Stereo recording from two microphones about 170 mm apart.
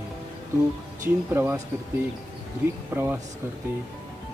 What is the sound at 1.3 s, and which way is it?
Speech, 15° right (ahead or behind).